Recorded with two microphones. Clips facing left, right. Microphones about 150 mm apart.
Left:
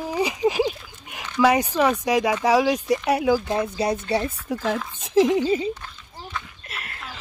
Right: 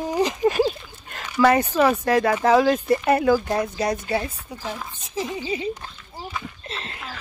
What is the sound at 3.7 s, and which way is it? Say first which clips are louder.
Speech: left 1 dB; 30° left (ahead or behind).